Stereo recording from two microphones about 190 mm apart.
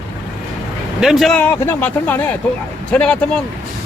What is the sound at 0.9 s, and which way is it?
Speech, centre (ahead or behind).